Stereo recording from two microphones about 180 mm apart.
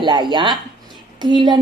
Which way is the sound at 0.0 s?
25° right (ahead or behind).